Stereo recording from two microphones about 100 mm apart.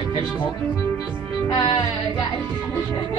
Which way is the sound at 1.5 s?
50° left (ahead or behind).